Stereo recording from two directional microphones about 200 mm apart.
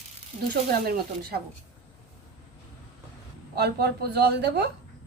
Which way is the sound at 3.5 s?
55° right (ahead or behind).